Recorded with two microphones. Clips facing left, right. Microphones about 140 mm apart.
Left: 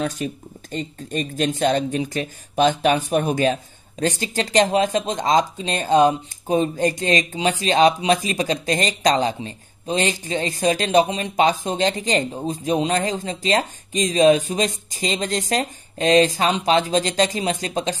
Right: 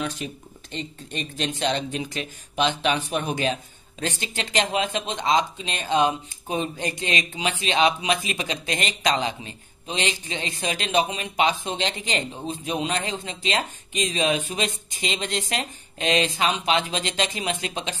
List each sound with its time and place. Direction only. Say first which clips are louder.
0.0 s speech: left 5 dB; 45° left (ahead or behind)